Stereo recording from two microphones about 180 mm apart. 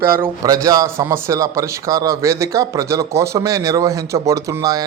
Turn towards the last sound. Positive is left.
turn(degrees=-20)  # may be behind; listen again after turning